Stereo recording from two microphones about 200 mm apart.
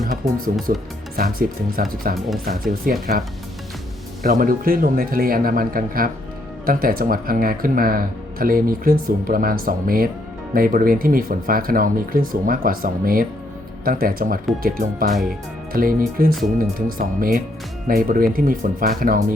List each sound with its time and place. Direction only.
0.7 s speech: 45° right (ahead or behind)